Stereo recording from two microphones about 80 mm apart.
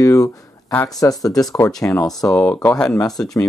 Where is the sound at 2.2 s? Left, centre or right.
Centre.